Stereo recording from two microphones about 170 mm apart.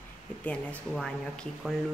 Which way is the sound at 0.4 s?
10° left (ahead or behind).